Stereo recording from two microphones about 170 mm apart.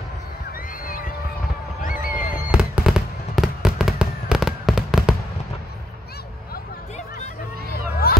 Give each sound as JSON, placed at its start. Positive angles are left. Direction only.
{"t": 0.8, "sound": "horse", "side_deg": 55}
{"t": 1.8, "sound": "a sound", "side_deg": 55}
{"t": 2.5, "sound": "fireworks", "side_deg": -5}
{"t": 8.0, "sound": "music", "side_deg": 60}